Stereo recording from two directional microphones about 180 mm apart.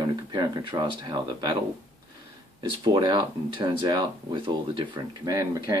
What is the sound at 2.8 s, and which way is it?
Speech, 25° right (ahead or behind).